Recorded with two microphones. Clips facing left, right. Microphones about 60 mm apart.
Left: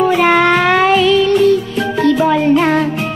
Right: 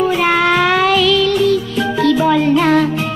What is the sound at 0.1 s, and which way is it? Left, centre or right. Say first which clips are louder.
Music: left 3 dB; centre.